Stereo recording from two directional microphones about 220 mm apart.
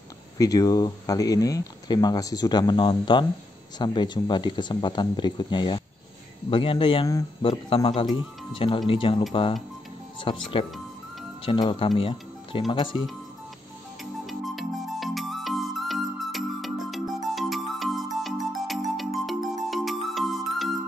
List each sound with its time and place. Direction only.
0.4 s speech: 15° left (ahead or behind)
14.2 s music: centre (ahead or behind)